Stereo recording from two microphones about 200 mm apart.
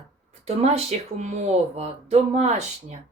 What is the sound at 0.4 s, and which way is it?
Speech, 30° right (ahead or behind).